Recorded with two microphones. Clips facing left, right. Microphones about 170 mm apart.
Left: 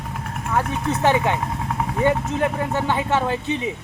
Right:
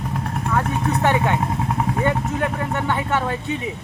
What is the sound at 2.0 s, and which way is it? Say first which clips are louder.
A man's voice: left 6 dB; 25° left (ahead or behind).